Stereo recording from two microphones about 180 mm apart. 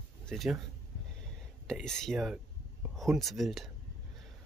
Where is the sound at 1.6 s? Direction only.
5° left (ahead or behind).